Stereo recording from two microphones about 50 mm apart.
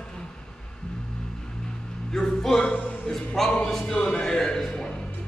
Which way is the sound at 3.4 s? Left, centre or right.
Centre.